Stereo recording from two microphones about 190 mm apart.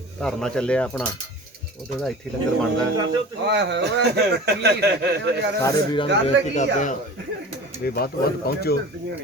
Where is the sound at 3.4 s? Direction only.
65° right (ahead or behind).